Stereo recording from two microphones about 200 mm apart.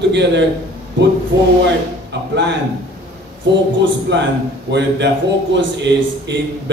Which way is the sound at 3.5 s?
60° right (ahead or behind).